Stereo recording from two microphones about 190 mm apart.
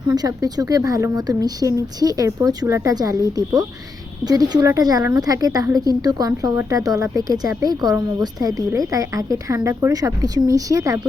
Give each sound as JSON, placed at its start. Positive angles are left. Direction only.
{"t": 0.1, "sound": "a woman's voice", "side_deg": -20}